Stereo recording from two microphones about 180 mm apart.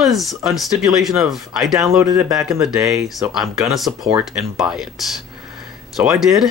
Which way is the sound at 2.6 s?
Centre (ahead or behind).